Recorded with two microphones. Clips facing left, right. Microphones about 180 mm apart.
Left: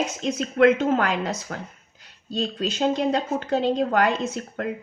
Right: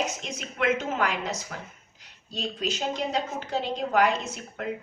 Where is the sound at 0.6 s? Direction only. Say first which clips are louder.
Left 8 dB; 60° left (ahead or behind).